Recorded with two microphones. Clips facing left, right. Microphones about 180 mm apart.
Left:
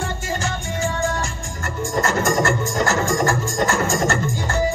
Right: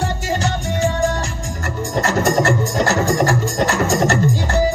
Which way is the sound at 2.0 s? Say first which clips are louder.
Right 3 dB; 35° right (ahead or behind).